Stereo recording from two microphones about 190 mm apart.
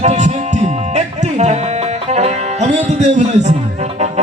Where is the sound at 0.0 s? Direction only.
35° right (ahead or behind).